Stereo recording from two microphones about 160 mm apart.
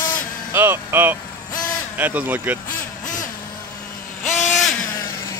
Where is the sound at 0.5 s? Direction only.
15° right (ahead or behind).